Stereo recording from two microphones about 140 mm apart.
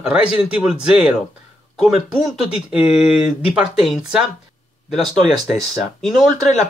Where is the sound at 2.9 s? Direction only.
45° left (ahead or behind).